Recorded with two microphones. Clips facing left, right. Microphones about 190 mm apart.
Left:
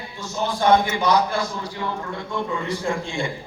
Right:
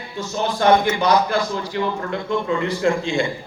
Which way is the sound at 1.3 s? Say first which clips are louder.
Right 4 dB; 90° right.